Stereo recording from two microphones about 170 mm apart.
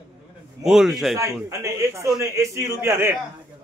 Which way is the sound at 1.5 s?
15° right (ahead or behind).